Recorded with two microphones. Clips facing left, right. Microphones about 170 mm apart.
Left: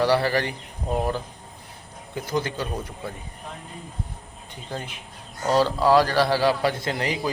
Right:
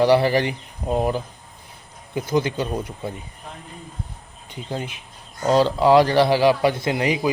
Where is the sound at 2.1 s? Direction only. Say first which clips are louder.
Right 5 dB; 15° right (ahead or behind).